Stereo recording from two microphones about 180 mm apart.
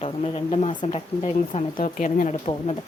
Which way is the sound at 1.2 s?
45° left (ahead or behind).